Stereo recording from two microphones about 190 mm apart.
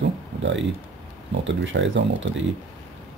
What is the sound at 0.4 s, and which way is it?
Speech, 75° right (ahead or behind).